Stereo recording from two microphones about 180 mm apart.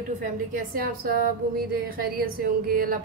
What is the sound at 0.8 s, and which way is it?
Speech, 55° right (ahead or behind).